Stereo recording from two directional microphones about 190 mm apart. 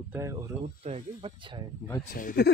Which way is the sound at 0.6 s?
35° right (ahead or behind).